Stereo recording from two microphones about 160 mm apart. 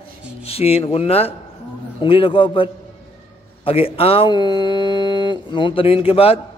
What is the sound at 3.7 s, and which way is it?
Speech, 35° left (ahead or behind).